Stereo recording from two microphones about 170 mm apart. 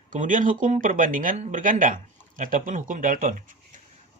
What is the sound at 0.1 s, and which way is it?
A man's voice, 50° right (ahead or behind).